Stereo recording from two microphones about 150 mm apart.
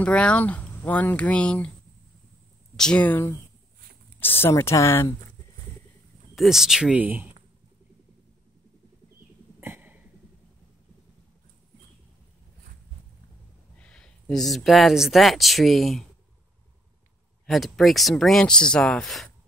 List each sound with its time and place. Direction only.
0.0 s speech: 5° left (ahead or behind)
2.7 s speech: 5° left (ahead or behind)
6.3 s speech: centre (ahead or behind)
9.6 s a sound: 10° right (ahead or behind)
13.7 s speech: 5° left (ahead or behind)
17.5 s speech: centre (ahead or behind)